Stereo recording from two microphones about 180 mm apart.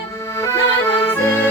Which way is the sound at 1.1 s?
10° left (ahead or behind).